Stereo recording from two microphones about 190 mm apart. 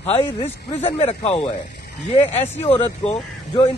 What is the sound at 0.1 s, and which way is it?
Speech, 35° left (ahead or behind).